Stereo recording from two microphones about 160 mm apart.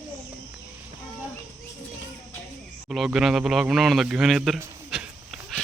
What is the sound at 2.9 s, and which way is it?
Speech, 5° right (ahead or behind).